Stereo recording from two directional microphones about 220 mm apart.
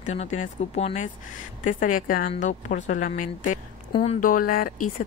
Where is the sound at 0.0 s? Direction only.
30° left (ahead or behind).